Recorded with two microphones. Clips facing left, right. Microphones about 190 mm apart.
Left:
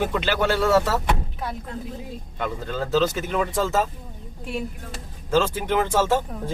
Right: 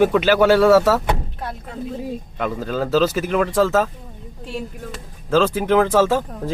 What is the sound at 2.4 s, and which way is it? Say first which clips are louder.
Speech: right 5 dB; 90° right.